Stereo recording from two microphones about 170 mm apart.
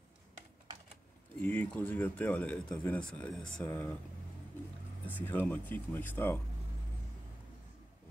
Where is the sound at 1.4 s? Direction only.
10° left (ahead or behind).